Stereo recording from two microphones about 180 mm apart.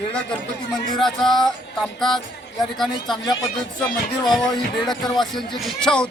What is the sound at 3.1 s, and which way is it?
Speech, 25° left (ahead or behind).